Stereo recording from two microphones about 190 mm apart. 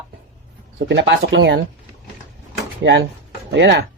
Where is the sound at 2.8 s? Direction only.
75° right (ahead or behind).